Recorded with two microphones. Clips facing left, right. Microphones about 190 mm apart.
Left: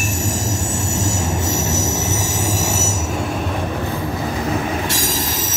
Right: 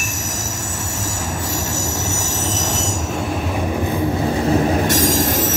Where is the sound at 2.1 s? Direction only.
15° left (ahead or behind).